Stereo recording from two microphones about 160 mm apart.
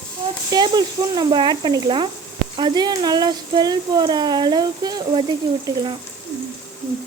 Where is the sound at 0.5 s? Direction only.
25° right (ahead or behind).